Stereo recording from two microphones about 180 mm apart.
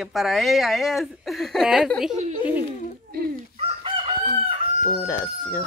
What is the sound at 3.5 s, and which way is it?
Chicken, 30° right (ahead or behind).